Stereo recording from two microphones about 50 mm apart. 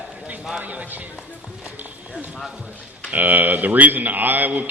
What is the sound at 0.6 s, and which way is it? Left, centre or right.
Run, right.